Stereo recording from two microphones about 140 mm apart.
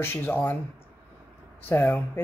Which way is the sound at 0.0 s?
15° left (ahead or behind).